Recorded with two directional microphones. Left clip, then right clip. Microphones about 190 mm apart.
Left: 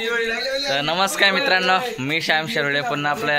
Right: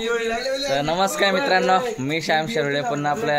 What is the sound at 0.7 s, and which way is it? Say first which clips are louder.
A man's voice: even; 10° right (ahead or behind).